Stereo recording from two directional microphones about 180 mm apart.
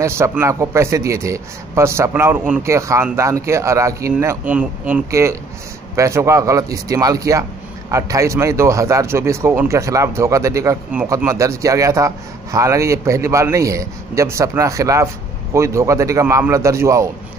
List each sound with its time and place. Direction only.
0.0 s a man's voice: 15° right (ahead or behind)